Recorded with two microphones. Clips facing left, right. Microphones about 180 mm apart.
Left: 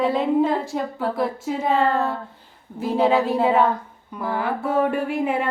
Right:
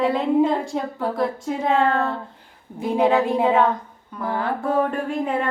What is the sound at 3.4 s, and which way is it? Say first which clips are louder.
Speech: even; 10° left (ahead or behind).